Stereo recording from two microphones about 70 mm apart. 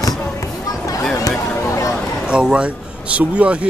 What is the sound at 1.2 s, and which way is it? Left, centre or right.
Speech, left.